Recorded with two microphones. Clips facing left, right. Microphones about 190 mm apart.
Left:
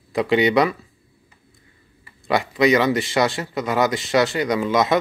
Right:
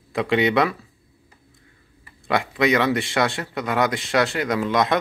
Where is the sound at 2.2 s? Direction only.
Centre (ahead or behind).